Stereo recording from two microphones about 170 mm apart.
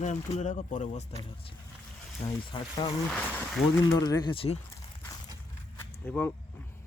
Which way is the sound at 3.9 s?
25° left (ahead or behind).